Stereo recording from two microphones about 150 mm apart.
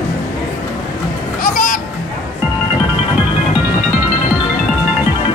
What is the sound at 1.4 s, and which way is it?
Music, 70° left (ahead or behind).